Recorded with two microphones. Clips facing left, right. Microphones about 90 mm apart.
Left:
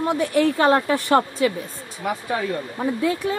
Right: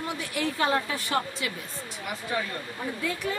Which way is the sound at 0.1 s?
50° left (ahead or behind).